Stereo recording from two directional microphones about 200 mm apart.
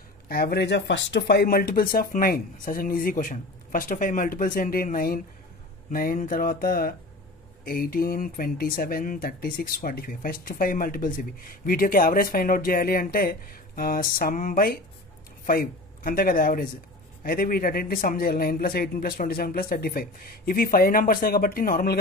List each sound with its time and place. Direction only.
0.3 s a man's voice: 50° left (ahead or behind)